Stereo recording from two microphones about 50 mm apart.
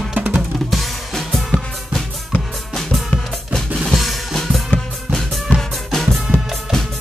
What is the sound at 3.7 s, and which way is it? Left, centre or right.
Drum kit, centre.